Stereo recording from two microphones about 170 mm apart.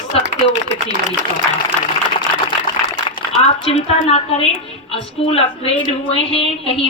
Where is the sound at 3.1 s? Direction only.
30° left (ahead or behind).